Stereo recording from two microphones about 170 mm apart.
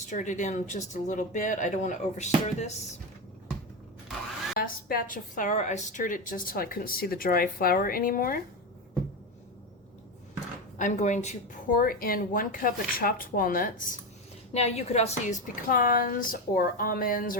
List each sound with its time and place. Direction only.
0.1 s speech: 45° left (ahead or behind)
4.5 s a woman's voice: 60° left (ahead or behind)
10.8 s speech: 45° left (ahead or behind)
11.8 s a woman's voice: 60° left (ahead or behind)
14.5 s a woman's voice: 40° left (ahead or behind)
15.7 s a woman's voice: 55° left (ahead or behind)